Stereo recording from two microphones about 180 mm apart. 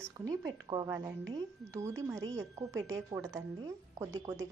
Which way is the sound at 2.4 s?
15° right (ahead or behind).